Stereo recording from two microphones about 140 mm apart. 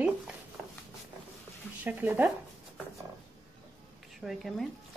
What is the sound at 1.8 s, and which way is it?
Speech, 15° right (ahead or behind).